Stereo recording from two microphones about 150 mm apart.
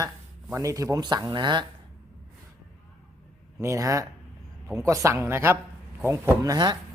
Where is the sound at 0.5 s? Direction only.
20° right (ahead or behind).